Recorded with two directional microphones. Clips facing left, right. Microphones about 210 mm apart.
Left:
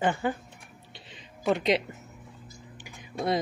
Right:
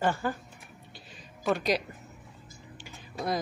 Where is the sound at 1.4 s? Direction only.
20° left (ahead or behind).